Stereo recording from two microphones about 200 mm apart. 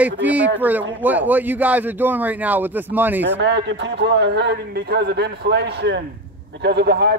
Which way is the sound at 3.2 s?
60° right (ahead or behind).